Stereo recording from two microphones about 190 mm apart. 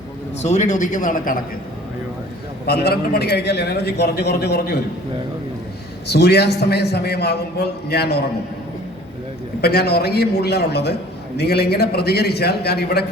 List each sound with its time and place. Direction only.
0.4 s speech: 35° left (ahead or behind)
2.6 s a man's voice: 55° left (ahead or behind)
6.1 s a man's voice: 60° left (ahead or behind)
9.6 s a man's voice: 55° left (ahead or behind)